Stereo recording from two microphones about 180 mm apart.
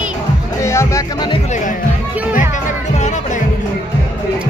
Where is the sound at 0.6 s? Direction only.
15° left (ahead or behind).